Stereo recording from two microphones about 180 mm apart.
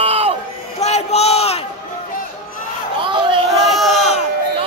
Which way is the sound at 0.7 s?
35° left (ahead or behind).